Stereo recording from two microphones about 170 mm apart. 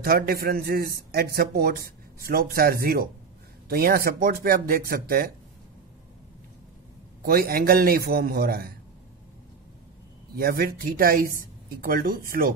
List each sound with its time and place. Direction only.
0.0 s a man's voice: 65° right (ahead or behind)
7.2 s a man's voice: 60° right (ahead or behind)
10.3 s a man's voice: 60° right (ahead or behind)